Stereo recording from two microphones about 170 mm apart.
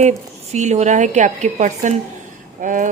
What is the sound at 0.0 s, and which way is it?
A woman's voice, 40° right (ahead or behind).